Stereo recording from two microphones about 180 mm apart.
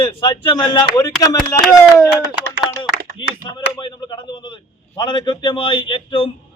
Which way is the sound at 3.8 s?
25° left (ahead or behind).